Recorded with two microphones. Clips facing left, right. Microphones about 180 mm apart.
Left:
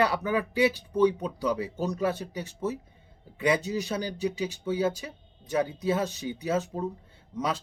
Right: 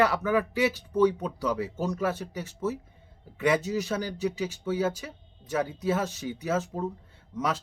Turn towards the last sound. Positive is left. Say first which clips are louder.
# even
turn(degrees=15)  # may be behind; listen again after turning